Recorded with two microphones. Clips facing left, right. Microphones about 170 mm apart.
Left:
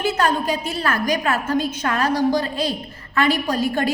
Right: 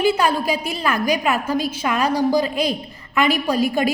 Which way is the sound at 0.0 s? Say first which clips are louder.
Right 2 dB; 10° right (ahead or behind).